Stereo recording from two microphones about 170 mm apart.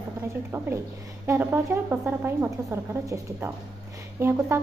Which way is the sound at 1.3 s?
15° right (ahead or behind).